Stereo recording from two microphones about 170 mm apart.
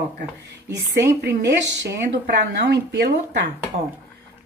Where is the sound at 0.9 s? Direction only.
70° right (ahead or behind).